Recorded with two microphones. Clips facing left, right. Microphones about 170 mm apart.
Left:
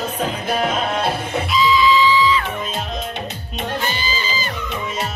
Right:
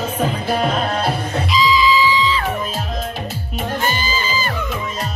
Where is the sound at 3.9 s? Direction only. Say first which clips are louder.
Right 3 dB; 50° right (ahead or behind).